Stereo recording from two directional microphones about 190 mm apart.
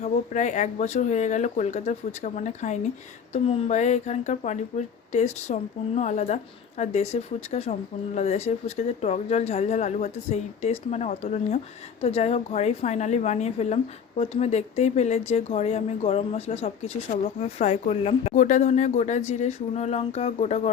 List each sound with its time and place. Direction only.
0.0 s speech: 40° left (ahead or behind)